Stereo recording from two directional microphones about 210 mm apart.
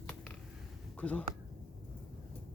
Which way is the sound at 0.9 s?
5° left (ahead or behind).